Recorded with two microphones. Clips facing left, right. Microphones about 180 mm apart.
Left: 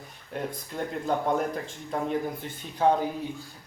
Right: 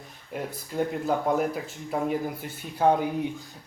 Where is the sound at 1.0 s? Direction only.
5° right (ahead or behind).